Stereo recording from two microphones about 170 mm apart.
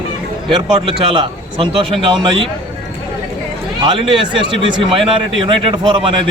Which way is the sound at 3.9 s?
30° right (ahead or behind).